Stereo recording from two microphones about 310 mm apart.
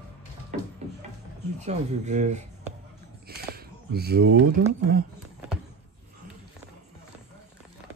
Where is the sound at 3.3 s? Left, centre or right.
Right.